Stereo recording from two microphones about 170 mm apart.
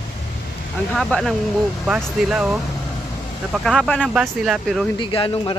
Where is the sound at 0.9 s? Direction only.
5° left (ahead or behind).